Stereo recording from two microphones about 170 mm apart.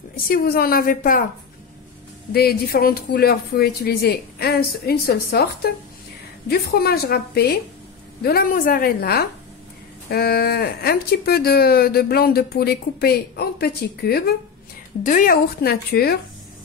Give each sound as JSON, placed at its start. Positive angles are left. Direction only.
{"t": 0.3, "sound": "speech", "side_deg": 60}
{"t": 2.3, "sound": "speech", "side_deg": 65}
{"t": 15.0, "sound": "speech", "side_deg": 55}